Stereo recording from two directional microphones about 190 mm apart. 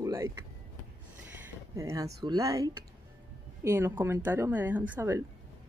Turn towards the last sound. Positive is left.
turn(degrees=-10)  # may be behind; listen again after turning